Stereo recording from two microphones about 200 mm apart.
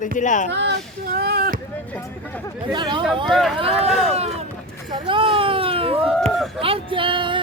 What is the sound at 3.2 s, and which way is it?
Speech, centre (ahead or behind).